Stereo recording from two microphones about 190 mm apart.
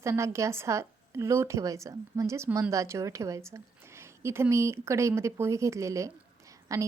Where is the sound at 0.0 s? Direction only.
15° right (ahead or behind).